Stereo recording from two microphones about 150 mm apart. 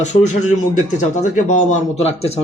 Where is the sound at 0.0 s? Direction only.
50° left (ahead or behind).